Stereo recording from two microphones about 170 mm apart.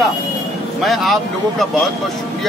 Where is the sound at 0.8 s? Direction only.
Centre (ahead or behind).